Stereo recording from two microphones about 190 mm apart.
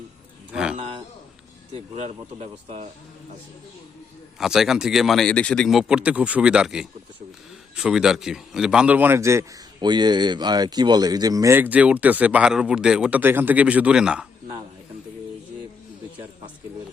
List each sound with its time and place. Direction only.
0.5 s speech: 5° right (ahead or behind)
1.7 s speech: 30° right (ahead or behind)
4.4 s speech: 5° right (ahead or behind)